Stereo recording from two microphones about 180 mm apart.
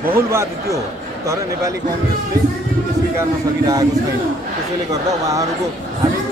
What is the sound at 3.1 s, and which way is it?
Speech, 15° right (ahead or behind).